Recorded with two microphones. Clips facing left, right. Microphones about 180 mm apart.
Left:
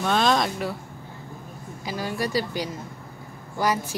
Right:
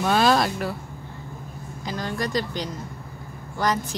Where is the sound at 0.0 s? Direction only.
5° right (ahead or behind).